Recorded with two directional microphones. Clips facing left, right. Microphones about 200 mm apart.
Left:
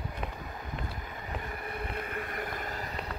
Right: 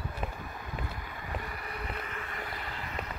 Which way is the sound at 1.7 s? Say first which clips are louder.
Left 4 dB; 50° left (ahead or behind).